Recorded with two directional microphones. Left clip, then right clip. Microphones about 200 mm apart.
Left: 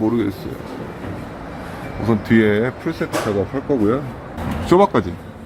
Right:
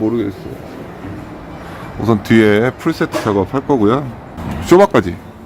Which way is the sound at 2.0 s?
35° right (ahead or behind).